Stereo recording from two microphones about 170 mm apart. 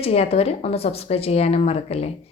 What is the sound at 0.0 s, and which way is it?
A woman's voice, 35° left (ahead or behind).